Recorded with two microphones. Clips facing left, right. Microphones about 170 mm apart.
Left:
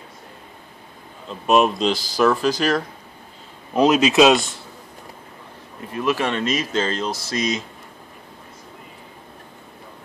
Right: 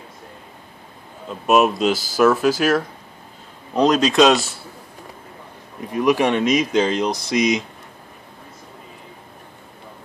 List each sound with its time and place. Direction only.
1.3 s speech: 5° right (ahead or behind)
3.7 s speech: 5° left (ahead or behind)
5.9 s speech: 15° right (ahead or behind)